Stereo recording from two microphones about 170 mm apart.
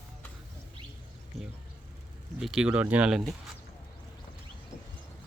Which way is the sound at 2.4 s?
5° right (ahead or behind).